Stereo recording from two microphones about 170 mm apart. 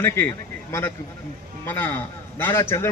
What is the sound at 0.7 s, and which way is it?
A man's voice, 15° left (ahead or behind).